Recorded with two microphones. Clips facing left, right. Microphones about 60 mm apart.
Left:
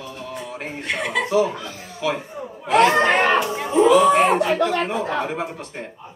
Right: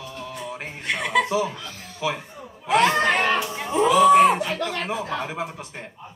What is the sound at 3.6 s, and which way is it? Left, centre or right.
Music, centre.